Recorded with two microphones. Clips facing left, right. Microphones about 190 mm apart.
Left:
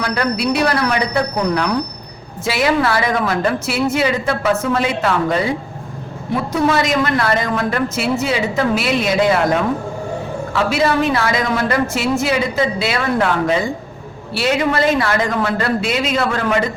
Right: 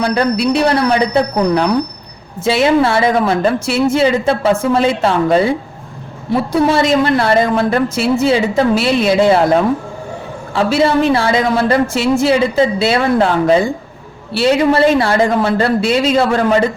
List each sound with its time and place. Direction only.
0.0 s a woman's voice: 25° right (ahead or behind)
6.5 s a woman's voice: 30° right (ahead or behind)
10.5 s a woman's voice: 30° right (ahead or behind)